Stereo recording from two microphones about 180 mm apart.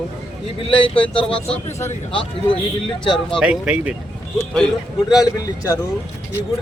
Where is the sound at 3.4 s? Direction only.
5° right (ahead or behind).